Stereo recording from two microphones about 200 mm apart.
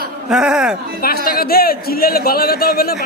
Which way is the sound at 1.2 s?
50° left (ahead or behind).